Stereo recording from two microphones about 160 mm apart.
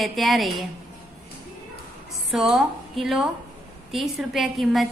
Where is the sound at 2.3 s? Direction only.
Centre (ahead or behind).